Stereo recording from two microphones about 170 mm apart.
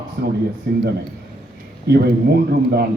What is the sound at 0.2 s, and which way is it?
Speech, 70° right (ahead or behind).